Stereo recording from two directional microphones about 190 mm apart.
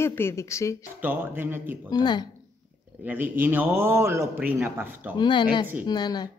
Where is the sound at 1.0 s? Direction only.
10° right (ahead or behind).